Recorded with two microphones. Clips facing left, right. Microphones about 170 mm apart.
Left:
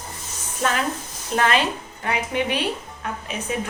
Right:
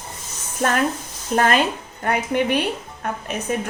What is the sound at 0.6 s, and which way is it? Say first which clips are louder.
A woman's voice: right 3 dB; 50° right (ahead or behind).